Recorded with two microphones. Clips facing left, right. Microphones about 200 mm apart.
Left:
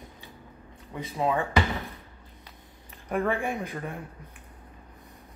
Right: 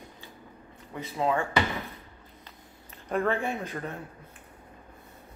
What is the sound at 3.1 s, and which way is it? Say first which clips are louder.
Speech: even; 15° left (ahead or behind).